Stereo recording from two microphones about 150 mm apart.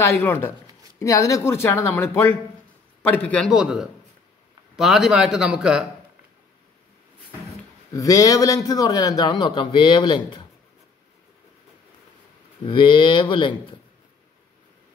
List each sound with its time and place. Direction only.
0.0 s speech: 15° left (ahead or behind)
3.5 s a man's voice: 5° right (ahead or behind)
7.9 s a man's voice: 20° left (ahead or behind)
12.6 s speech: 35° left (ahead or behind)